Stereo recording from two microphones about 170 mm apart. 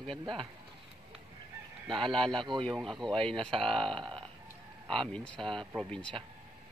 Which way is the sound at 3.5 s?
30° right (ahead or behind).